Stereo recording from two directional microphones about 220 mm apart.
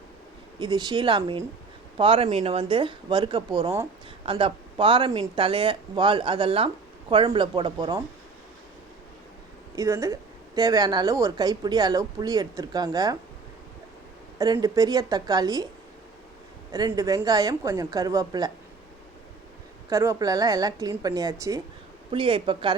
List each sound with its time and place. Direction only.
0.6 s speech: 20° right (ahead or behind)
9.7 s a woman's voice: 15° right (ahead or behind)
14.3 s a woman's voice: 15° right (ahead or behind)
16.7 s a woman's voice: 15° right (ahead or behind)
19.9 s a woman's voice: 15° right (ahead or behind)